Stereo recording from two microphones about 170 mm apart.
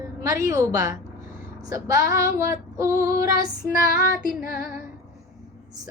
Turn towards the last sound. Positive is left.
turn(degrees=55)  # may be behind; listen again after turning